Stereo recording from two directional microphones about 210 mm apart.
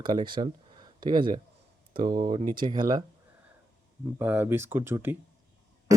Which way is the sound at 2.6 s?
20° right (ahead or behind).